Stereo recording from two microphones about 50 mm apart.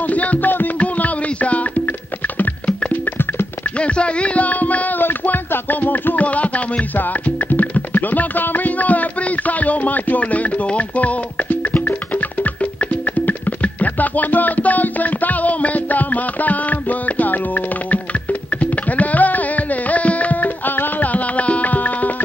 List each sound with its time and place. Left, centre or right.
0.1 s music: left
3.8 s a sound: left
5.0 s music: left
9.5 s speech: left
13.3 s music: left
18.6 s music: left